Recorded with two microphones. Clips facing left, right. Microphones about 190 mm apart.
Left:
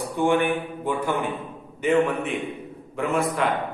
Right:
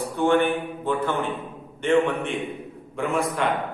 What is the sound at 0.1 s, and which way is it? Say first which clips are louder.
A man's voice: right 1 dB; 15° left (ahead or behind).